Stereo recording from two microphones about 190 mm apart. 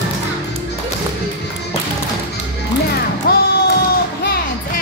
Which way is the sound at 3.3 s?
50° left (ahead or behind).